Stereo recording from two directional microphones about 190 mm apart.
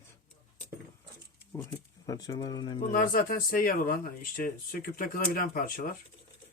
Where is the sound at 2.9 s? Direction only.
45° left (ahead or behind).